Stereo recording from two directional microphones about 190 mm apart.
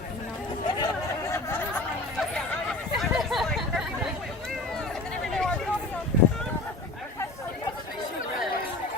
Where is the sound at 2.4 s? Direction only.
Centre (ahead or behind).